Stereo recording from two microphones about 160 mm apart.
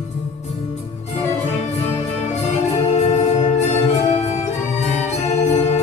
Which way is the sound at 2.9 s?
45° left (ahead or behind).